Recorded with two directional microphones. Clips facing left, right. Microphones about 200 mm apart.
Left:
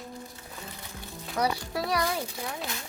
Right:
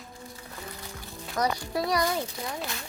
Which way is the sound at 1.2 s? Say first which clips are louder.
Even; 5° left (ahead or behind).